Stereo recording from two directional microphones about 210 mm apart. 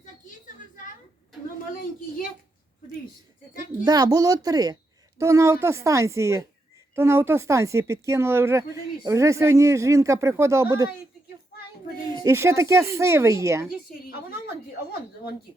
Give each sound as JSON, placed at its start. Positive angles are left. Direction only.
{"t": 1.7, "sound": "a woman's voice", "side_deg": 45}
{"t": 3.8, "sound": "speech", "side_deg": -20}
{"t": 12.0, "sound": "speech", "side_deg": -20}